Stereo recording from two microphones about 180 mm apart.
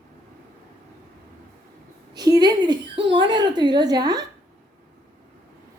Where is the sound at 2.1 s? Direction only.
20° right (ahead or behind).